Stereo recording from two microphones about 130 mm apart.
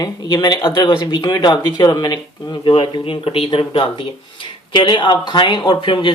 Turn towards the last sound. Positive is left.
turn(degrees=40)  # may be behind; listen again after turning